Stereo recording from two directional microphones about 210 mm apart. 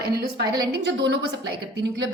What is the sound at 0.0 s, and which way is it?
A woman's voice, 50° right (ahead or behind).